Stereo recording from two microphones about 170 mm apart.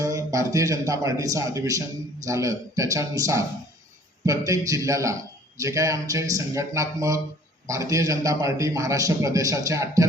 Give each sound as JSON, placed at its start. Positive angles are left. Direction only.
{"t": 0.0, "sound": "a man's voice", "side_deg": -20}